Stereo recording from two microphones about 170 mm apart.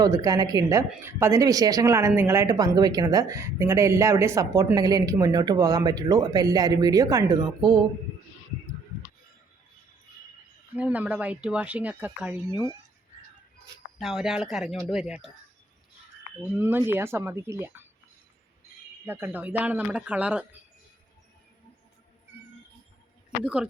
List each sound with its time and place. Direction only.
0.0 s speech: 20° right (ahead or behind)
10.8 s speech: 10° right (ahead or behind)
14.0 s speech: centre (ahead or behind)
16.4 s speech: 10° right (ahead or behind)
19.0 s speech: 10° right (ahead or behind)
23.4 s speech: 5° right (ahead or behind)